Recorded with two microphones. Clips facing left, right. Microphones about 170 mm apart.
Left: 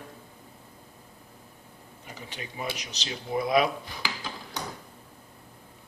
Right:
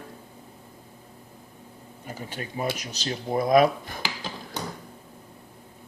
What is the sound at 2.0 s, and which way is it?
Speech, 45° right (ahead or behind).